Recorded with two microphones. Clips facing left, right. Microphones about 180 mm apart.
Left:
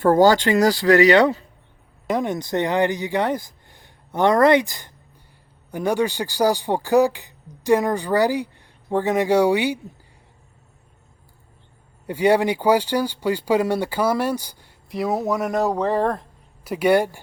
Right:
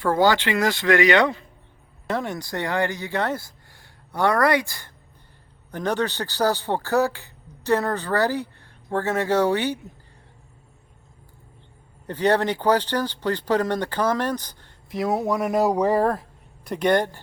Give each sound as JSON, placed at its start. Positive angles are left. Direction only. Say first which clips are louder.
{"t": 0.0, "sound": "speech", "louder": "left 5 dB", "side_deg": 45}
{"t": 2.0, "sound": "speech", "louder": "left 4 dB", "side_deg": 15}
{"t": 12.0, "sound": "speech", "louder": "left 3 dB", "side_deg": 10}
{"t": 16.6, "sound": "speech", "louder": "left 3 dB", "side_deg": 5}